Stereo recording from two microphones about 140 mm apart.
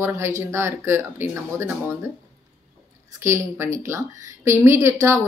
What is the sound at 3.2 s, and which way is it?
A woman's voice, 20° right (ahead or behind).